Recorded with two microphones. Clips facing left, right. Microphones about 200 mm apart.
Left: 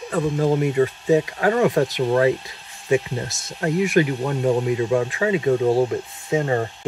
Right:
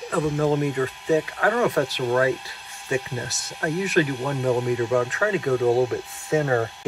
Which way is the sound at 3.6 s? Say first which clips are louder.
Left 3 dB; 10° left (ahead or behind).